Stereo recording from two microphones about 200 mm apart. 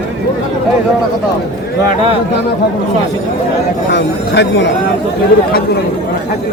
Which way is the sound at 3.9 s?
60° left (ahead or behind).